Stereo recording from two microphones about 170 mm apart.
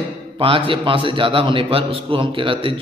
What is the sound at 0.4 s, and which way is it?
A man's voice, 30° right (ahead or behind).